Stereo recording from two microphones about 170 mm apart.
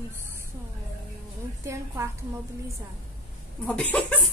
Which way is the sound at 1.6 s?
15° right (ahead or behind).